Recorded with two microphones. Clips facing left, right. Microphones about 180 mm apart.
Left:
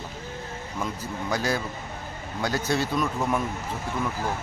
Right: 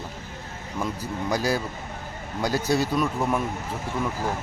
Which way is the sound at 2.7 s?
10° right (ahead or behind).